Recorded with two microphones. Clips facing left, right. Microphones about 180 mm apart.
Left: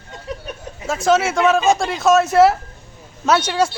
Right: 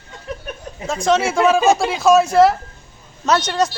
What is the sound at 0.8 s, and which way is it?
Speech, 5° left (ahead or behind).